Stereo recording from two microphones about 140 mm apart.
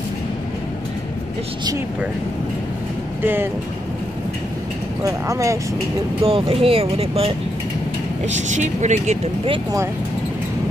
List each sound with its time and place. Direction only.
5.0 s speech: 25° right (ahead or behind)
6.2 s speech: 40° right (ahead or behind)
8.5 s speech: 55° right (ahead or behind)